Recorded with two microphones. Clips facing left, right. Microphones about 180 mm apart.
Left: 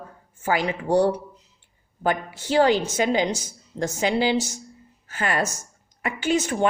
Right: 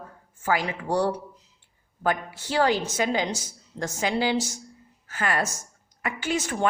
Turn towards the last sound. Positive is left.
turn(degrees=20)  # may be behind; listen again after turning